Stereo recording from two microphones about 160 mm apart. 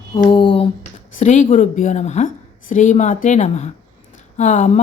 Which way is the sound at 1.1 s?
50° left (ahead or behind).